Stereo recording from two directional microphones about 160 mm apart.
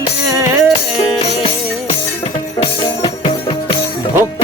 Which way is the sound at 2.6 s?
35° left (ahead or behind).